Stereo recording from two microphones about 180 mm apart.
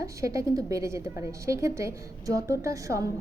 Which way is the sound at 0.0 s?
15° right (ahead or behind).